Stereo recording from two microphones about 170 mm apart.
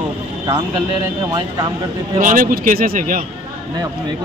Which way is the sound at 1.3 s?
25° right (ahead or behind).